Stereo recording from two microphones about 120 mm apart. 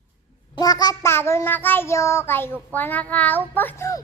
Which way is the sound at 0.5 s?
35° left (ahead or behind).